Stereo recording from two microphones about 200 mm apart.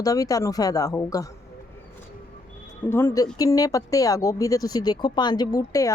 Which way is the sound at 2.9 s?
10° left (ahead or behind).